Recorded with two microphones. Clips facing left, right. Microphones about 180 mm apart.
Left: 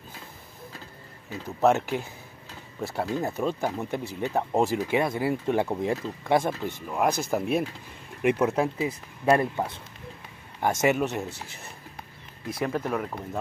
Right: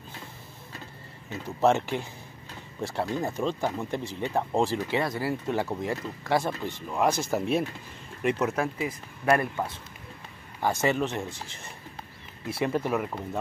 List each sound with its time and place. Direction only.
1.3 s speech: 5° left (ahead or behind); by 6.5 s 20° left (ahead or behind)
6.6 s speech: 5° left (ahead or behind)
8.2 s speech: 15° left (ahead or behind)
12.4 s speech: 10° right (ahead or behind)